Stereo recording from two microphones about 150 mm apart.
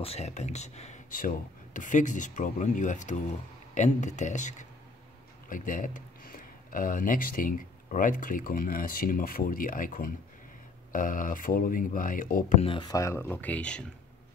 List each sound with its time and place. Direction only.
0.0 s speech: 45° left (ahead or behind)
1.1 s speech: 65° left (ahead or behind)
12.5 s speech: 35° left (ahead or behind); by 13.8 s 5° left (ahead or behind)